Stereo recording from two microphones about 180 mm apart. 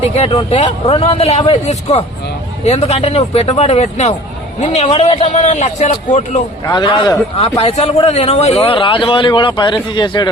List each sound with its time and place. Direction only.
0.1 s speech: 35° left (ahead or behind)
6.7 s speech: 25° left (ahead or behind)